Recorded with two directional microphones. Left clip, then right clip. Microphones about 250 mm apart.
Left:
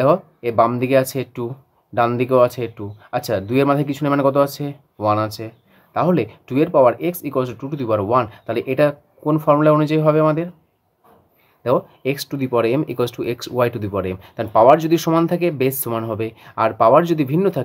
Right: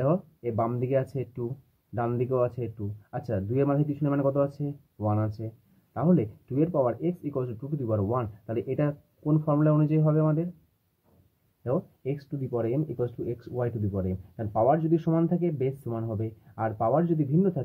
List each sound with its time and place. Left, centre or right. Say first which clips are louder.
0.0 s speech: left 11 dB; left
11.6 s speech: left 12 dB; left